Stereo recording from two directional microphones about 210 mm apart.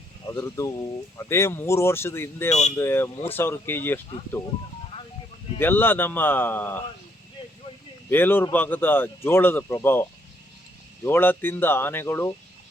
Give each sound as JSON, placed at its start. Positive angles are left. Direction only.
{"t": 0.3, "sound": "speech", "side_deg": 15}
{"t": 2.5, "sound": "speech", "side_deg": 30}
{"t": 2.7, "sound": "speech", "side_deg": 10}
{"t": 5.5, "sound": "speech", "side_deg": 10}
{"t": 8.1, "sound": "speech", "side_deg": 10}